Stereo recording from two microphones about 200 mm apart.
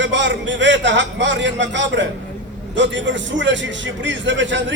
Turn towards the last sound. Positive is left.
turn(degrees=-65)  # may be behind; listen again after turning